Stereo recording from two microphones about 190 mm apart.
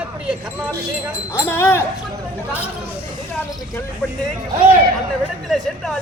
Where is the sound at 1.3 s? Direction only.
15° left (ahead or behind).